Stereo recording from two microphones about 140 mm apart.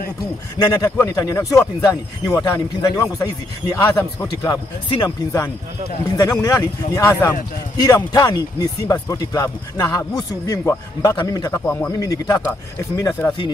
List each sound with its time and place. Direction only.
0.8 s speech: 15° left (ahead or behind)
1.1 s speech: 25° left (ahead or behind)
5.0 s speech: 20° left (ahead or behind)
11.6 s speech: 10° left (ahead or behind)
12.0 s speech: 25° left (ahead or behind)